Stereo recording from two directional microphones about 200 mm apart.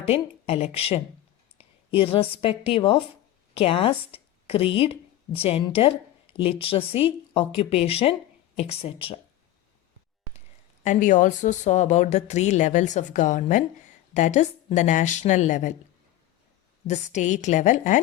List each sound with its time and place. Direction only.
0.0 s a woman's voice: 30° left (ahead or behind)
10.8 s a woman's voice: 40° left (ahead or behind)
16.8 s a woman's voice: 35° left (ahead or behind)